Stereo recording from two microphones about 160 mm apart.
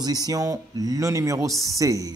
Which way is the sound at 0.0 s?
25° right (ahead or behind).